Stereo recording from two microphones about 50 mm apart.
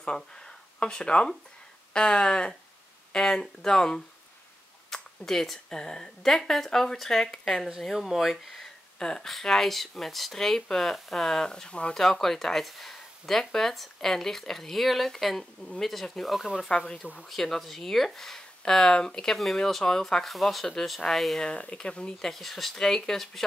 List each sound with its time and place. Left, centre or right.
0.7 s speech: centre
9.0 s speech: centre
16.3 s speech: centre
16.6 s speech: centre
17.3 s speech: centre
21.4 s speech: left
22.2 s speech: centre